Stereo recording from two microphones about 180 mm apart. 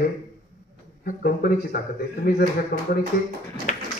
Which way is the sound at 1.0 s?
55° left (ahead or behind).